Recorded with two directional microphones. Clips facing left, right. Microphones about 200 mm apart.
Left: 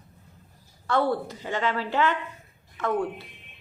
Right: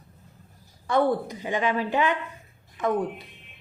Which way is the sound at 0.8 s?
15° right (ahead or behind).